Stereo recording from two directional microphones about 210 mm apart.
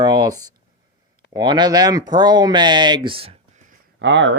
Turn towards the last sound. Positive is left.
turn(degrees=-55)  # may be behind; listen again after turning